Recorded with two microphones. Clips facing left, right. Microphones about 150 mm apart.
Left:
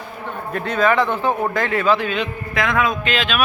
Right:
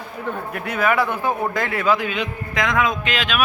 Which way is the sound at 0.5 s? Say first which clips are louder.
Left 3 dB; 10° right (ahead or behind).